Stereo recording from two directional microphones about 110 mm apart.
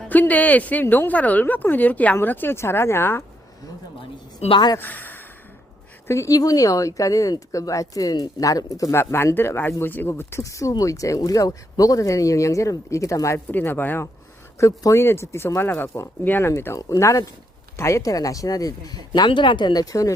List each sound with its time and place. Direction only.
0.1 s speech: 15° left (ahead or behind)
4.5 s speech: 40° left (ahead or behind)
4.8 s speech: 15° left (ahead or behind)
6.1 s speech: 30° left (ahead or behind)